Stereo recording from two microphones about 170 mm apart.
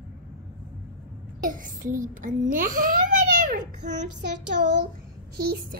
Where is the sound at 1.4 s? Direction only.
50° right (ahead or behind).